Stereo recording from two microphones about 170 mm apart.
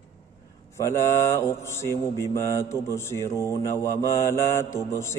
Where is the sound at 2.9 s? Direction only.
15° left (ahead or behind).